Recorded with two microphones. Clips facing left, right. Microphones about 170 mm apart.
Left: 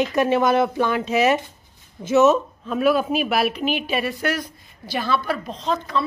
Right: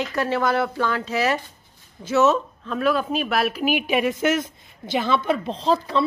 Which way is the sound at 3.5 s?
5° right (ahead or behind).